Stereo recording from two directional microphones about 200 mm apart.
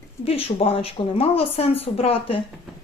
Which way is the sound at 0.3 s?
30° left (ahead or behind).